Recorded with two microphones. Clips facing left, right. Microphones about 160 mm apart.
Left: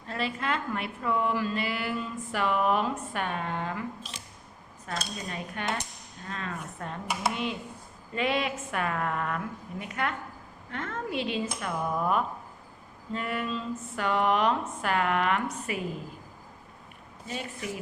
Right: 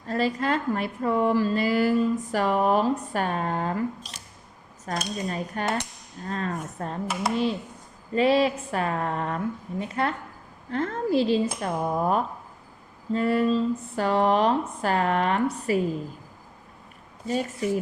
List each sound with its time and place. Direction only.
0.1 s a woman's voice: 40° right (ahead or behind)
7.1 s speech: centre (ahead or behind)
8.1 s a woman's voice: 35° right (ahead or behind)
17.2 s a woman's voice: 40° right (ahead or behind)